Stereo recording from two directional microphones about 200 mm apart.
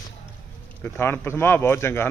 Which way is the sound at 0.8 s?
10° left (ahead or behind).